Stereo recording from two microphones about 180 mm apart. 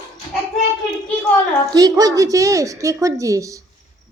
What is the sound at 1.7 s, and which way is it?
A woman's voice, 20° right (ahead or behind).